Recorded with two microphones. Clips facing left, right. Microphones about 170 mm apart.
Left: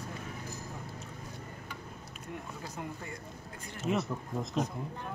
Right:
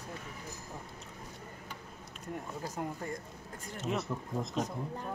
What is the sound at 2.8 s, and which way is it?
Speech, 40° right (ahead or behind).